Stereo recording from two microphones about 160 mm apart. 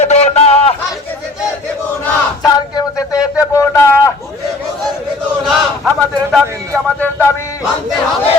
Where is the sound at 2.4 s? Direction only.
20° left (ahead or behind).